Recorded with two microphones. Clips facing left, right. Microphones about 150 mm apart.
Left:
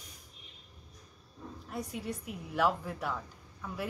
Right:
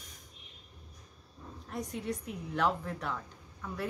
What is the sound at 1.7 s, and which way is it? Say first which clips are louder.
Speech: right 2 dB; 5° left (ahead or behind).